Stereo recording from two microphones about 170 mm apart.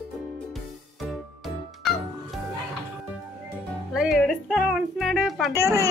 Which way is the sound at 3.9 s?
Centre (ahead or behind).